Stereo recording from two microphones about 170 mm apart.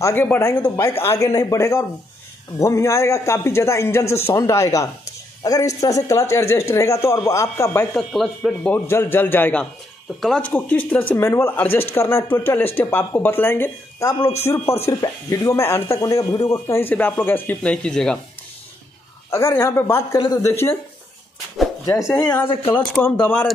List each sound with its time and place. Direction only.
0.0 s a man's voice: 15° left (ahead or behind)
8.1 s speech: centre (ahead or behind)
8.7 s speech: 15° left (ahead or behind)
19.3 s speech: 15° left (ahead or behind)
21.8 s speech: 20° left (ahead or behind)
22.1 s speech: 5° left (ahead or behind)